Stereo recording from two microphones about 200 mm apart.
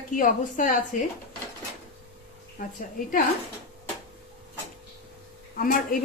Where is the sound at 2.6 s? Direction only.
40° left (ahead or behind).